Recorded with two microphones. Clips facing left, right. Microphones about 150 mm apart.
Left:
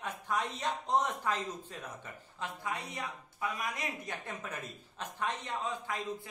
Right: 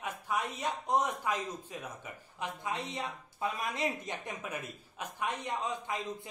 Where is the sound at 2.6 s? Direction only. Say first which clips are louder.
Right 2 dB; 25° right (ahead or behind).